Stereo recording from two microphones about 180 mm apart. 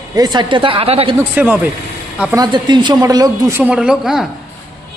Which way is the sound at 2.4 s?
25° right (ahead or behind).